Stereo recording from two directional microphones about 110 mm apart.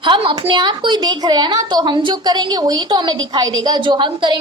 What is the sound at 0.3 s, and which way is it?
A woman's voice, 45° right (ahead or behind).